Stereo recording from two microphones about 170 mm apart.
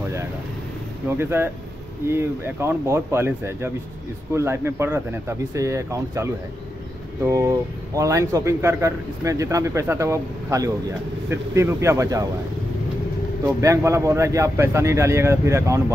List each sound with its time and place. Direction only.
1.0 s a man's voice: 15° right (ahead or behind)
13.6 s a man's voice: 15° right (ahead or behind)